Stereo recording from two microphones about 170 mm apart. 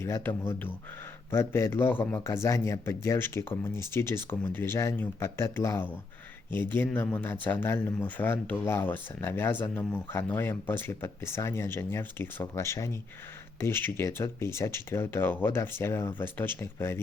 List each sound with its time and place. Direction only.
0.0 s speech: 15° left (ahead or behind)